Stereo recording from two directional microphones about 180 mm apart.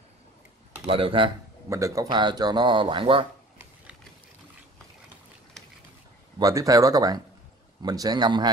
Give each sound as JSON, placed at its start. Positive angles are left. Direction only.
{"t": 0.8, "sound": "speech", "side_deg": -30}
{"t": 1.7, "sound": "speech", "side_deg": -15}
{"t": 6.4, "sound": "speech", "side_deg": -20}